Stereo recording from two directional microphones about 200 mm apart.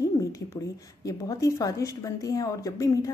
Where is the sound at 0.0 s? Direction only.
15° left (ahead or behind).